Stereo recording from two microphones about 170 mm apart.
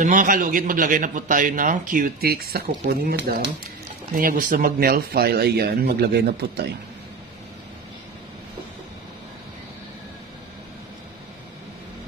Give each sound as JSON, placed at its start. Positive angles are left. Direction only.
{"t": 0.0, "sound": "a man's voice", "side_deg": -50}